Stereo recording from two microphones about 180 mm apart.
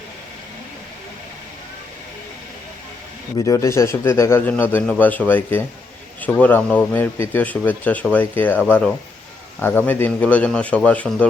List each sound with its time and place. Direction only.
3.3 s speech: 20° left (ahead or behind)